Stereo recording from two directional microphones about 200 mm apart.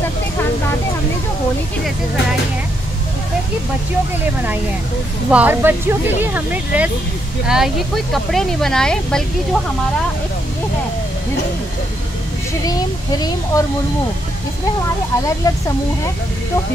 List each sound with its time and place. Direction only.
5.3 s speech: 10° right (ahead or behind)
12.6 s speech: 20° left (ahead or behind)
15.4 s speech: 15° left (ahead or behind)